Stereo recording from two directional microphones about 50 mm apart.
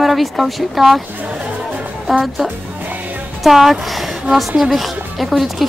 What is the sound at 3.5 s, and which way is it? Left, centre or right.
Speech, centre.